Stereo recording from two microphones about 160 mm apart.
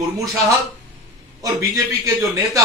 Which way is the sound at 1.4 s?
20° right (ahead or behind).